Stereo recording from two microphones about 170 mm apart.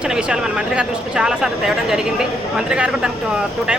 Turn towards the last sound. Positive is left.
turn(degrees=-5)  # may be behind; listen again after turning